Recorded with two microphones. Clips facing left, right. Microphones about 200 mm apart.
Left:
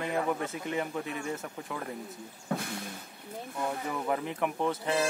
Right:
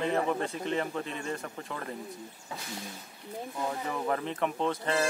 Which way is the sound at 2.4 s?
55° left (ahead or behind).